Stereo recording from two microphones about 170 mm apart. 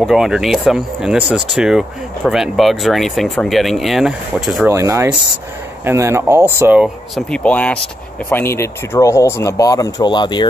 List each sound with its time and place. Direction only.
0.0 s speech: centre (ahead or behind)
4.6 s speech: 15° right (ahead or behind)
6.8 s speech: 5° left (ahead or behind); by 10.4 s 25° left (ahead or behind)